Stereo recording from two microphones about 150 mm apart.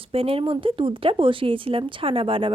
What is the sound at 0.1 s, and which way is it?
Speech, 40° right (ahead or behind).